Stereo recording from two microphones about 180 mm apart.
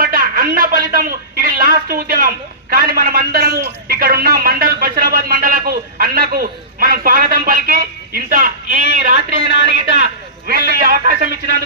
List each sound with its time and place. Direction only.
0.0 s speech: 50° right (ahead or behind)